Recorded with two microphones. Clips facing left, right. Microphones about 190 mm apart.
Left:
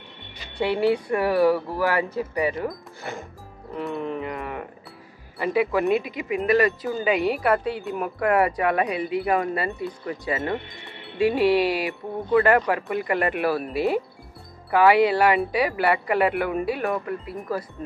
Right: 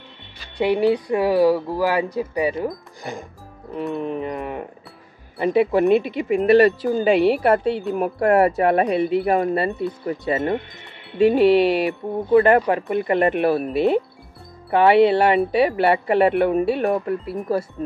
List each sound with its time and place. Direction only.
0.6 s speech: 15° right (ahead or behind)
5.9 s speech: centre (ahead or behind)
6.5 s speech: 30° right (ahead or behind)